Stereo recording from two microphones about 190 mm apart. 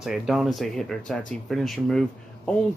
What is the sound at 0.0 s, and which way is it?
Speech, centre (ahead or behind).